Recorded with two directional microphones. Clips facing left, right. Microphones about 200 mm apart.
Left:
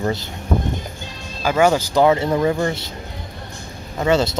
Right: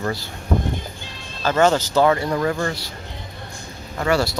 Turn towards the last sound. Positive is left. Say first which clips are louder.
# left 3 dB
turn(degrees=20)  # may be behind; listen again after turning